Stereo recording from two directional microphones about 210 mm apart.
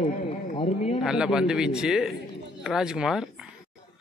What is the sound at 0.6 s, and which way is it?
Speech, 30° left (ahead or behind).